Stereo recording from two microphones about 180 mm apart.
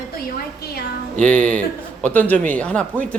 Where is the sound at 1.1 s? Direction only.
5° left (ahead or behind).